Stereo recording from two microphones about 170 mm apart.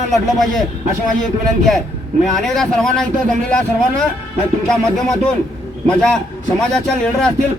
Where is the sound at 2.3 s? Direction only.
Centre (ahead or behind).